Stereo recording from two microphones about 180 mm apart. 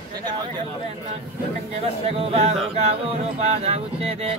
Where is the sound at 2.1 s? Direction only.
35° right (ahead or behind).